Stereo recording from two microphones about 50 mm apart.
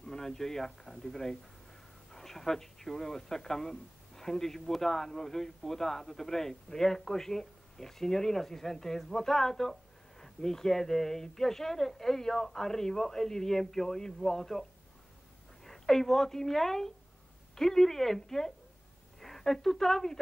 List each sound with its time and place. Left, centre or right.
0.1 s a man's voice: centre